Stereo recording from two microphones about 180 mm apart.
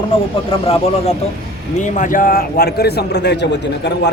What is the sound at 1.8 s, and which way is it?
A man's voice, 45° left (ahead or behind).